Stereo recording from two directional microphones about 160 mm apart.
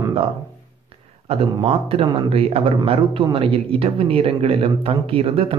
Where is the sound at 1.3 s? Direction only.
40° right (ahead or behind).